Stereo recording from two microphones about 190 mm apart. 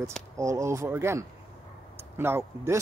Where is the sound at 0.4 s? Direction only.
15° right (ahead or behind).